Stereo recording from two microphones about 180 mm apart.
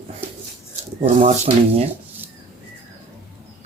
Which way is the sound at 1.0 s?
35° right (ahead or behind).